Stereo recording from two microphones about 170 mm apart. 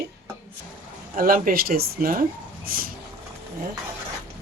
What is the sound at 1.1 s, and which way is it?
Speech, 55° right (ahead or behind).